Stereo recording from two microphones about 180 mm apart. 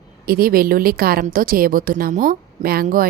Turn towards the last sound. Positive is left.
turn(degrees=-55)  # may be behind; listen again after turning